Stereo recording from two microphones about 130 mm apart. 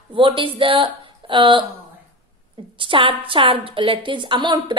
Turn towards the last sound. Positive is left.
turn(degrees=-35)  # may be behind; listen again after turning